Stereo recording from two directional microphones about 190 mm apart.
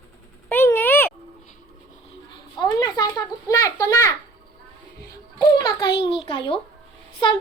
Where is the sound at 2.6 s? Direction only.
20° left (ahead or behind).